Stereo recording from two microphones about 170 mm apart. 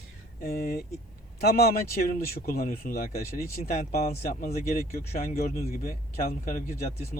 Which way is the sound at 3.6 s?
45° left (ahead or behind).